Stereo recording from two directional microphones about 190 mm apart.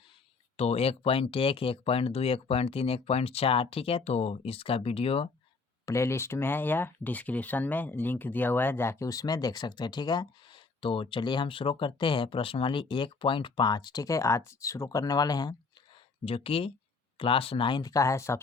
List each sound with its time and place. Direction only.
0.5 s speech: 35° left (ahead or behind)
5.8 s speech: 15° left (ahead or behind)